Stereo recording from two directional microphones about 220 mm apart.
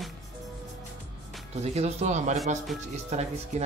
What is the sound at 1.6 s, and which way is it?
Speech, 30° right (ahead or behind).